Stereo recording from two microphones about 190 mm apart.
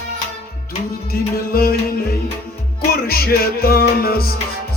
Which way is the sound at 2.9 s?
50° left (ahead or behind).